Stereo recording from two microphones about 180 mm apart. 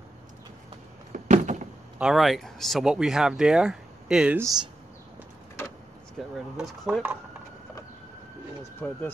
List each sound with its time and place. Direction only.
1.1 s a sound: 45° right (ahead or behind)
2.0 s speech: centre (ahead or behind)
4.4 s speech: 20° right (ahead or behind)
6.3 s speech: centre (ahead or behind)
8.7 s speech: 10° left (ahead or behind)